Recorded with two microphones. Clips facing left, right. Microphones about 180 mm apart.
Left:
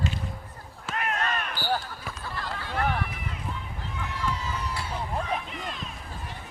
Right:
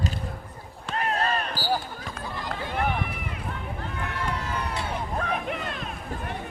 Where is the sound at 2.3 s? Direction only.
15° right (ahead or behind).